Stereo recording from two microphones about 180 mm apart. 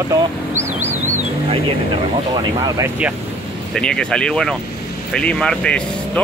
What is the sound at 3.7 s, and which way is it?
Speech, 5° left (ahead or behind).